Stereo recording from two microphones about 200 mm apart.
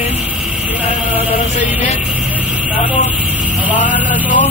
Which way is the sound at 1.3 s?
35° left (ahead or behind).